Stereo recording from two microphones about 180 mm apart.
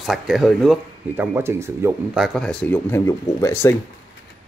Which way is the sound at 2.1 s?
Centre (ahead or behind).